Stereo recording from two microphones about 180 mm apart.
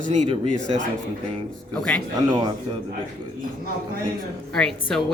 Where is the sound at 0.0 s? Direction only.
40° right (ahead or behind).